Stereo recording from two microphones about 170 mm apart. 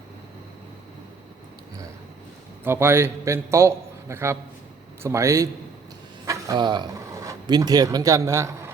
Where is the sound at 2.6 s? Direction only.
15° right (ahead or behind).